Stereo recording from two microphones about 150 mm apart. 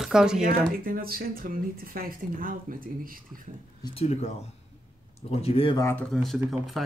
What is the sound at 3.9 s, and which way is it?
Speech, 45° left (ahead or behind).